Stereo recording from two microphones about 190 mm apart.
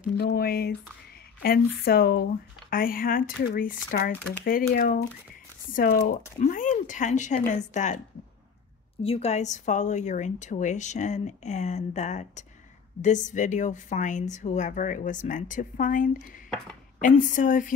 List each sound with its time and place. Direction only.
0.2 s a woman's voice: 55° left (ahead or behind); by 8.0 s 40° left (ahead or behind)
9.0 s a woman's voice: 30° left (ahead or behind)